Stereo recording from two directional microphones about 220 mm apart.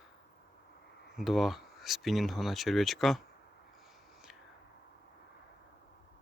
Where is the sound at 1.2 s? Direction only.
Centre (ahead or behind).